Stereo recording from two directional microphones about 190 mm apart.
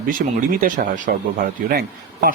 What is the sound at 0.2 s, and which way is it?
Speech, 50° right (ahead or behind).